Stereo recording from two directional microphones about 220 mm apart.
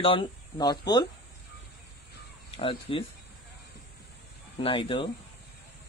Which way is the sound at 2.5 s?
25° left (ahead or behind).